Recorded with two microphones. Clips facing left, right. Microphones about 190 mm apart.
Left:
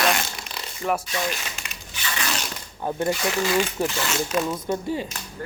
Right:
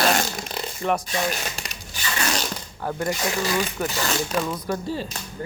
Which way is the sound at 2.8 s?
20° left (ahead or behind).